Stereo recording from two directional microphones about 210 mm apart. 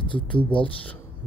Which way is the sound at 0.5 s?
5° left (ahead or behind).